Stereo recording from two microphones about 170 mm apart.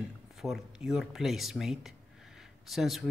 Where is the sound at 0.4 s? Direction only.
Centre (ahead or behind).